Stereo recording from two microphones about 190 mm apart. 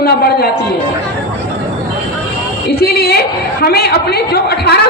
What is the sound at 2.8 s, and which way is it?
A woman's voice, 55° left (ahead or behind).